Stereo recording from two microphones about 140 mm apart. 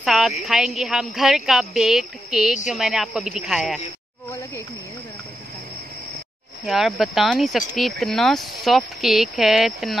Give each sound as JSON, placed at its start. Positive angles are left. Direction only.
{"t": 0.0, "sound": "a woman's voice", "side_deg": 0}
{"t": 4.3, "sound": "a sound", "side_deg": 20}
{"t": 6.6, "sound": "speech", "side_deg": 0}